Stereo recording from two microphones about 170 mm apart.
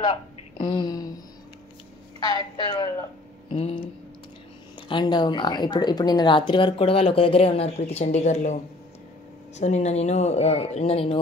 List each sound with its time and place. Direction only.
0.0 s speech: 25° left (ahead or behind)
2.1 s speech: 25° left (ahead or behind); by 8.5 s 45° left (ahead or behind)
9.6 s speech: 40° left (ahead or behind)